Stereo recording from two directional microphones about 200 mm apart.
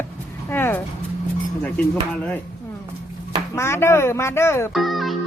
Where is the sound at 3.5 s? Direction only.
15° left (ahead or behind).